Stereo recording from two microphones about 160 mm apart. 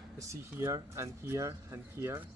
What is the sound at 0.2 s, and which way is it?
Speech, 20° right (ahead or behind).